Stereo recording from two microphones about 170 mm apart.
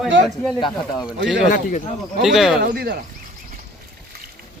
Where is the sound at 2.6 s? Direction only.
65° right (ahead or behind).